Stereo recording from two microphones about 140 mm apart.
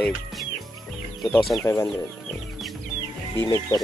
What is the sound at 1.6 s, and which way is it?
Speech, 20° left (ahead or behind).